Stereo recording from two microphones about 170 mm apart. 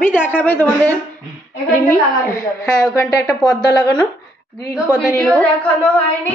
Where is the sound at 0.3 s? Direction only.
10° left (ahead or behind).